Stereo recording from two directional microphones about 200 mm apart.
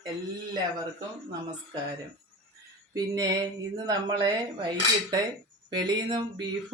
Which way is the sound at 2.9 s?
20° right (ahead or behind).